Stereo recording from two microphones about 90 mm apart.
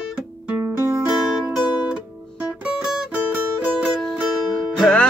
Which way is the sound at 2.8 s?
10° right (ahead or behind).